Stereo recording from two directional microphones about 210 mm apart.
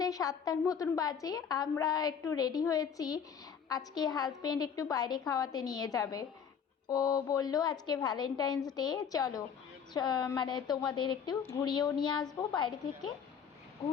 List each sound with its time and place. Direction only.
0.0 s a woman's voice: 15° left (ahead or behind)